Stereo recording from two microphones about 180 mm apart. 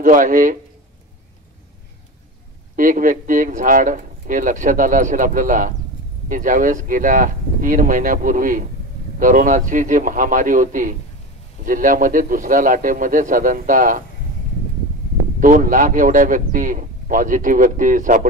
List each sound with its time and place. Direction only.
0.0 s speech: 50° right (ahead or behind)
2.7 s speech: 50° right (ahead or behind)
15.4 s speech: 50° right (ahead or behind)